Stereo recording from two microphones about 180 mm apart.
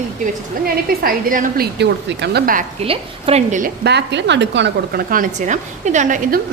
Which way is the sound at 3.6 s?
65° right (ahead or behind).